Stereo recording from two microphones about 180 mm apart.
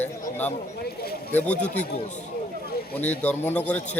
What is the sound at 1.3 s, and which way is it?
Speech, 10° left (ahead or behind).